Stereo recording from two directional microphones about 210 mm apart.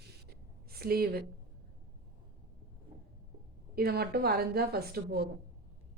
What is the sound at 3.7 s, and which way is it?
Speech, 45° right (ahead or behind).